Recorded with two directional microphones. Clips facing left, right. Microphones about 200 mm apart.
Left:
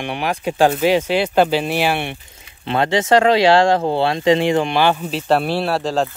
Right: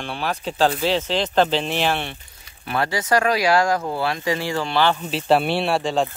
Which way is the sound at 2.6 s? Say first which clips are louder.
Left 6 dB; 25° left (ahead or behind).